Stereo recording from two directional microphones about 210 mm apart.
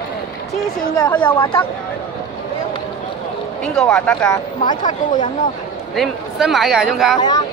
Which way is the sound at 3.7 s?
5° left (ahead or behind).